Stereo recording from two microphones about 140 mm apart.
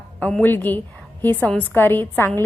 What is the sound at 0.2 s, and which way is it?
A woman's voice, 10° left (ahead or behind).